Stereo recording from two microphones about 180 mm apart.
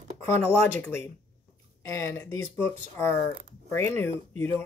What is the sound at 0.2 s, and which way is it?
Speech, 15° left (ahead or behind).